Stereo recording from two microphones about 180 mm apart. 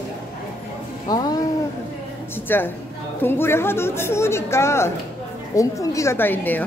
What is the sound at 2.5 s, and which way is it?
A woman's voice, 10° left (ahead or behind).